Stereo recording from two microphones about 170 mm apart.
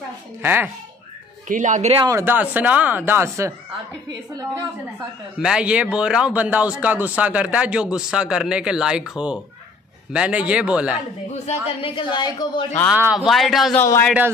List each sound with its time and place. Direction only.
0.4 s speech: 10° right (ahead or behind)
1.5 s speech: 45° right (ahead or behind)
2.0 s speech: 15° right (ahead or behind)
5.4 s speech: 5° right (ahead or behind)
11.3 s a man's voice: 40° left (ahead or behind)
12.9 s speech: 5° right (ahead or behind)
13.7 s speech: 10° left (ahead or behind)